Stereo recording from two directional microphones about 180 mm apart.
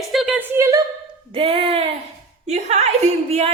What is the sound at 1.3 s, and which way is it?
A woman's voice, 30° right (ahead or behind).